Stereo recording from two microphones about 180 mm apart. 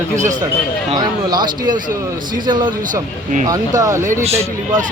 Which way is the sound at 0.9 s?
25° right (ahead or behind).